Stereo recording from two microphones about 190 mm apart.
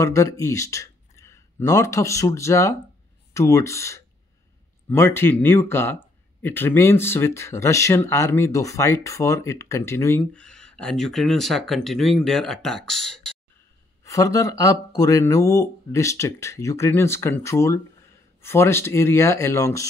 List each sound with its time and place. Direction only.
0.0 s speech: 15° left (ahead or behind)
14.0 s speech: 15° left (ahead or behind)